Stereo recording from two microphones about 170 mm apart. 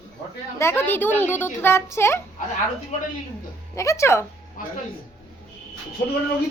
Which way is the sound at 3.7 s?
15° left (ahead or behind).